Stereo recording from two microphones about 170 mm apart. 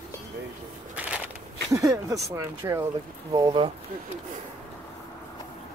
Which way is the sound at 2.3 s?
15° right (ahead or behind).